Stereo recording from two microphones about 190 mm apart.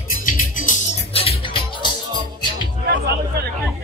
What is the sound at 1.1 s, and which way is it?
Music, 30° left (ahead or behind).